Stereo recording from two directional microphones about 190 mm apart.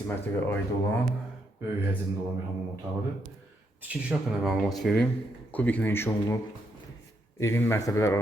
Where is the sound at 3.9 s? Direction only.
5° right (ahead or behind).